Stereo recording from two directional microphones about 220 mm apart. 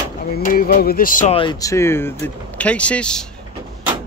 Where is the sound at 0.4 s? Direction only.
40° left (ahead or behind).